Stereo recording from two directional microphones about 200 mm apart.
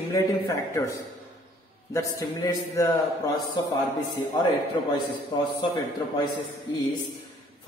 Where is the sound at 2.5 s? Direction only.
15° left (ahead or behind).